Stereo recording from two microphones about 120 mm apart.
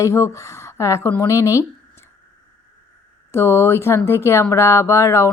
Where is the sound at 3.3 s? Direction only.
20° left (ahead or behind).